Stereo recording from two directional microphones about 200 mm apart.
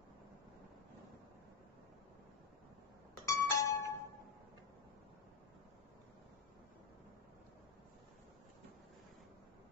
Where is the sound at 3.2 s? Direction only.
15° left (ahead or behind).